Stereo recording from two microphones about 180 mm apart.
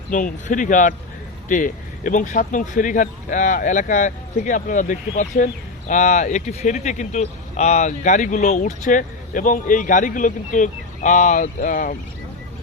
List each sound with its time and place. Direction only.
0.1 s speech: 45° left (ahead or behind)